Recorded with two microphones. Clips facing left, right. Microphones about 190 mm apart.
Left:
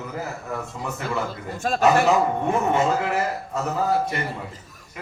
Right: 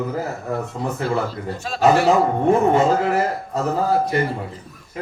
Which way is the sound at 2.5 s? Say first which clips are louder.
Right 8 dB; 30° right (ahead or behind).